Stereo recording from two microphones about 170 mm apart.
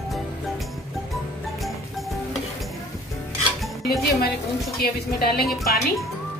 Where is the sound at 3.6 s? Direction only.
Centre (ahead or behind).